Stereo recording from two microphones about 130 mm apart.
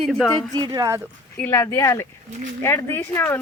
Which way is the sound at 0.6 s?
30° right (ahead or behind).